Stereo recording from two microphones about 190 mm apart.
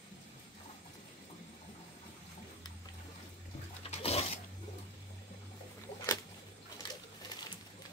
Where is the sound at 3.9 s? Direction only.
35° left (ahead or behind).